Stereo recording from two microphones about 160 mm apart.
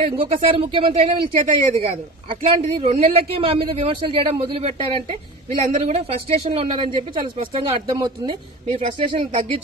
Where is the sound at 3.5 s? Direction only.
35° right (ahead or behind).